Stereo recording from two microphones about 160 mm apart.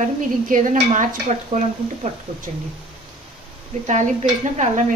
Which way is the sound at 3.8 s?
50° right (ahead or behind).